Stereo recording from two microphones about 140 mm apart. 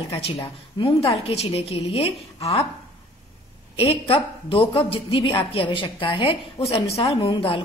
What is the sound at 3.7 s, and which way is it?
A woman's voice, 45° left (ahead or behind).